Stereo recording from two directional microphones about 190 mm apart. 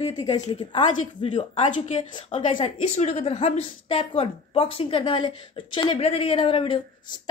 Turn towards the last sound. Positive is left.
turn(degrees=25)  # may be behind; listen again after turning